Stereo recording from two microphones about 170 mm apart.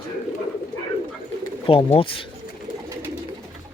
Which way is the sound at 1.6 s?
30° left (ahead or behind).